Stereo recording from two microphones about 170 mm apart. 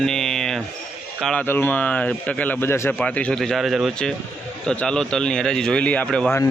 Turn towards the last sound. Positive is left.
turn(degrees=5)  # may be behind; listen again after turning